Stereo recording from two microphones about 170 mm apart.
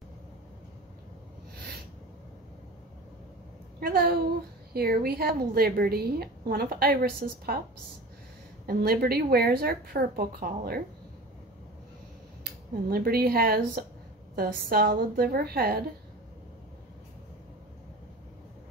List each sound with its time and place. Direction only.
3.8 s a woman's voice: 65° right (ahead or behind)
8.6 s a woman's voice: 60° right (ahead or behind)
12.4 s a woman's voice: 65° right (ahead or behind)